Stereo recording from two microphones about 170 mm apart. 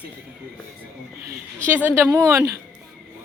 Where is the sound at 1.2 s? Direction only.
15° right (ahead or behind).